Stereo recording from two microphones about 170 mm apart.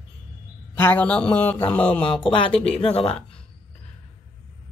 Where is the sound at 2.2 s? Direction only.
30° left (ahead or behind).